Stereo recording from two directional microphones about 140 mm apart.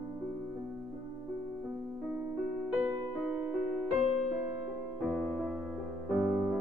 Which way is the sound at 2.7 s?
5° right (ahead or behind).